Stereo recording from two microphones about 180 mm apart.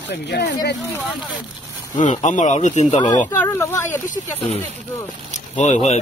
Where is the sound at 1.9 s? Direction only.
45° left (ahead or behind).